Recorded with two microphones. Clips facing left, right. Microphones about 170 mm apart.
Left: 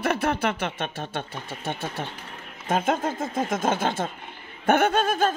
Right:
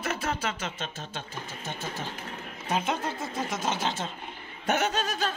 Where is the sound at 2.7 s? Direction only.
50° left (ahead or behind).